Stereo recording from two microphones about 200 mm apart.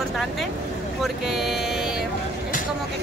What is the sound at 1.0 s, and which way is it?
Speech, centre (ahead or behind).